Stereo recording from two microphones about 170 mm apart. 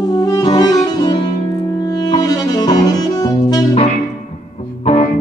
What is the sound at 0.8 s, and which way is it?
Saxophone, 25° left (ahead or behind).